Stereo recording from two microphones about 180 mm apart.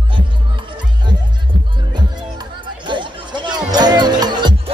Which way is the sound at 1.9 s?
25° right (ahead or behind).